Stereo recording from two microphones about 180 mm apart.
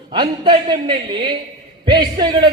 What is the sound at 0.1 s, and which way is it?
A man's voice, 25° right (ahead or behind).